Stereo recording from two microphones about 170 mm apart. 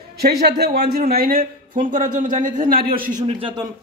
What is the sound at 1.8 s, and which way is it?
A man's voice, 50° right (ahead or behind).